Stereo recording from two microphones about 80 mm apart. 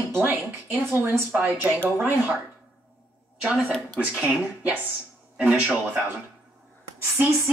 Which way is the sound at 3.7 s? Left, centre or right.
Centre.